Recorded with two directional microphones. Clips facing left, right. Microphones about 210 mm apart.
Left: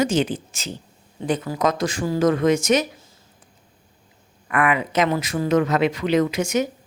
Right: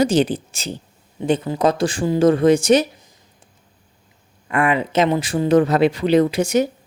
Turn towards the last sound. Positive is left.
turn(degrees=-35)  # may be behind; listen again after turning